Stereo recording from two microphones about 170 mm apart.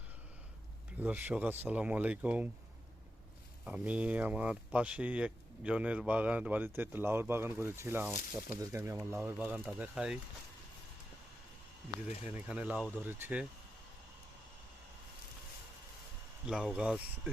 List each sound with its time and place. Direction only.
0.9 s speech: 10° right (ahead or behind)
3.6 s speech: 5° right (ahead or behind)
12.0 s speech: 10° right (ahead or behind)
16.5 s speech: 5° right (ahead or behind)